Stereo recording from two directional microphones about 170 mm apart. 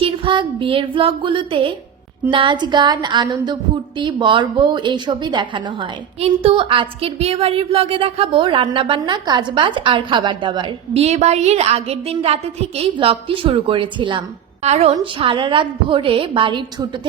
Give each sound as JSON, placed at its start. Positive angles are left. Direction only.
{"t": 0.0, "sound": "a woman's voice", "side_deg": -30}
{"t": 11.0, "sound": "a woman's voice", "side_deg": -40}